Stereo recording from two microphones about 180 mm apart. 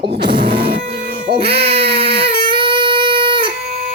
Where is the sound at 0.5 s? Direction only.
65° right (ahead or behind).